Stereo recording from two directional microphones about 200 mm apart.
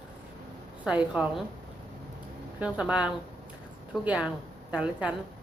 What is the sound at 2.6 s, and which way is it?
Speech, 5° right (ahead or behind).